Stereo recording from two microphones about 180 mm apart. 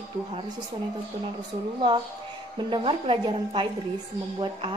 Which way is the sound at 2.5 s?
25° right (ahead or behind).